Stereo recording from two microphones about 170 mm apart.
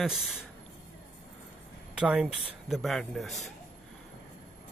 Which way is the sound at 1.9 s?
5° right (ahead or behind).